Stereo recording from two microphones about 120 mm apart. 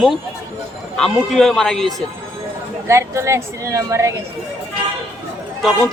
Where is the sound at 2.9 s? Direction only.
25° right (ahead or behind).